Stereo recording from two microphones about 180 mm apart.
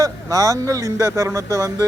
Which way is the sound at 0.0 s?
20° right (ahead or behind).